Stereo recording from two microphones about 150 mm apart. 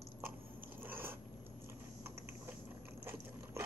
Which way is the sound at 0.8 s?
15° right (ahead or behind).